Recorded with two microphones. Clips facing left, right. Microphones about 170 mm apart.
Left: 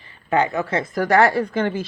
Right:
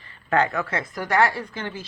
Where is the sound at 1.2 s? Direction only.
45° left (ahead or behind).